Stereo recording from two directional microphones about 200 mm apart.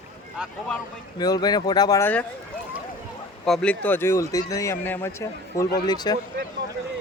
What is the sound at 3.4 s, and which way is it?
Speech, 5° left (ahead or behind).